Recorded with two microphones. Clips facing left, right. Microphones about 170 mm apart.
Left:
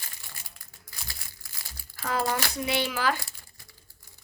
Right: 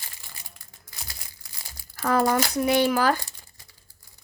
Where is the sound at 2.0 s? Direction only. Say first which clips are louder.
Right 7 dB; 45° right (ahead or behind).